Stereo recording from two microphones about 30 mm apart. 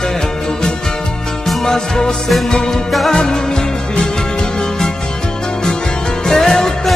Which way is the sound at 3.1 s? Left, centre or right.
Left.